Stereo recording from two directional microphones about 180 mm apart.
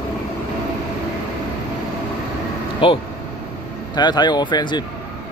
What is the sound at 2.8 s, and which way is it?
Speech, 30° left (ahead or behind).